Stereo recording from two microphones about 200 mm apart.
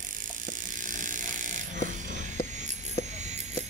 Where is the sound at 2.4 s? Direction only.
35° right (ahead or behind).